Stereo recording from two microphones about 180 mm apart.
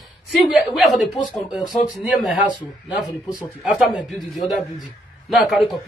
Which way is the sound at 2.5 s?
25° left (ahead or behind).